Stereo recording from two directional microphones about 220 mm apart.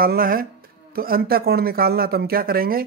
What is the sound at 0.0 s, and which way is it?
Speech, 40° right (ahead or behind).